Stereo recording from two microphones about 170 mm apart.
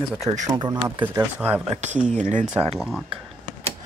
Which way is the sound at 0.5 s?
25° right (ahead or behind).